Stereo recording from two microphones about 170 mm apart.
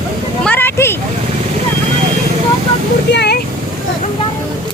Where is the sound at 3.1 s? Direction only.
80° left.